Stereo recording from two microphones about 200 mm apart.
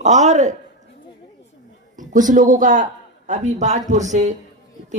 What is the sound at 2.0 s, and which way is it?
A man's voice, 40° right (ahead or behind).